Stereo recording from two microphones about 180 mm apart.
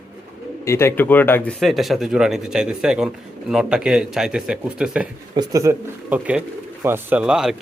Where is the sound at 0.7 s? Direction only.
15° left (ahead or behind).